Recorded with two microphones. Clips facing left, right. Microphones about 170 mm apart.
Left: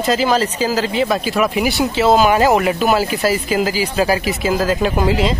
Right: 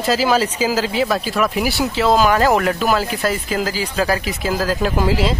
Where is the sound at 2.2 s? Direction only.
15° left (ahead or behind).